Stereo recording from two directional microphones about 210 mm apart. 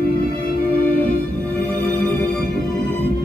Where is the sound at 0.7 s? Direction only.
45° left (ahead or behind).